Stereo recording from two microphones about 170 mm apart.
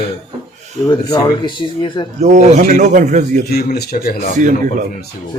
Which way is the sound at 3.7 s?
65° left (ahead or behind).